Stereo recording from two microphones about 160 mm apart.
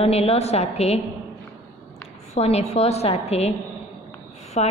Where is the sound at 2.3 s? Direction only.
40° left (ahead or behind).